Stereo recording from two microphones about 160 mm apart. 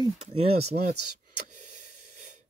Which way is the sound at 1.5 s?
50° right (ahead or behind).